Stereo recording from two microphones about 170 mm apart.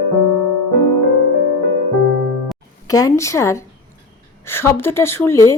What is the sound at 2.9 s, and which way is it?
Speech, 20° left (ahead or behind).